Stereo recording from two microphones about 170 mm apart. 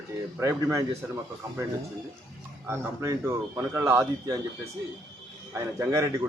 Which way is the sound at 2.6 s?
15° right (ahead or behind).